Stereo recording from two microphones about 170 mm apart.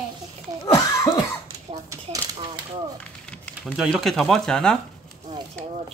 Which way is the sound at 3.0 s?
10° left (ahead or behind).